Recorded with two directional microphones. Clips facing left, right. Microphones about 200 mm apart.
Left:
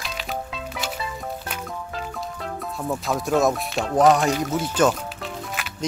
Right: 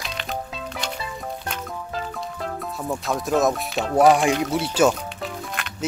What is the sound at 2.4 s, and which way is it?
Speech, centre (ahead or behind).